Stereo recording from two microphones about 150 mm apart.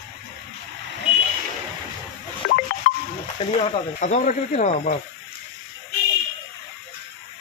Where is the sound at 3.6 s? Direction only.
55° left (ahead or behind).